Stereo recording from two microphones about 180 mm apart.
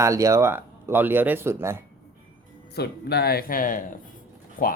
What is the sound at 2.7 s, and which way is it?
Speech, 65° left (ahead or behind).